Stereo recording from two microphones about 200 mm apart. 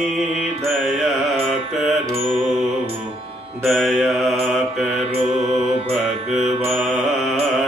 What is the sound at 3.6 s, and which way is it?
Mantra, centre (ahead or behind).